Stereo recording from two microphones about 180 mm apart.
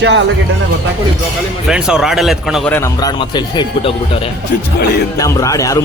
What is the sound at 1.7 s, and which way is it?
Speech, 5° right (ahead or behind).